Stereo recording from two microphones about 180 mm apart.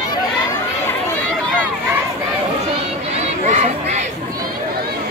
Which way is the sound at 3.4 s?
40° right (ahead or behind).